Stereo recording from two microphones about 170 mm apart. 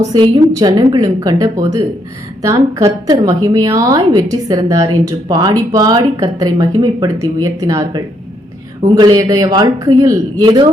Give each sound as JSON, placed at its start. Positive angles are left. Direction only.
{"t": 0.1, "sound": "a woman's voice", "side_deg": -25}